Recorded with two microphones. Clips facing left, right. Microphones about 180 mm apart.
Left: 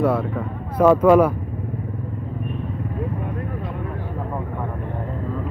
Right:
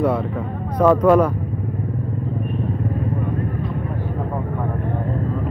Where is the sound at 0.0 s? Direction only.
Centre (ahead or behind).